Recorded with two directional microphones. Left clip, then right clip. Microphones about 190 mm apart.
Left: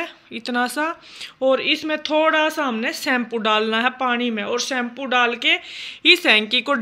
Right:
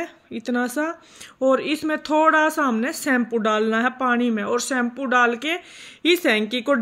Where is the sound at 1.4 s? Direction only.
50° right (ahead or behind).